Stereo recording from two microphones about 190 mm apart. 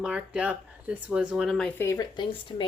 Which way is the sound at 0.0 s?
5° right (ahead or behind).